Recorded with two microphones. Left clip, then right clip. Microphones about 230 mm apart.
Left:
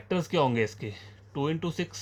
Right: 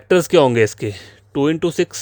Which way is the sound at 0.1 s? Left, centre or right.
Right.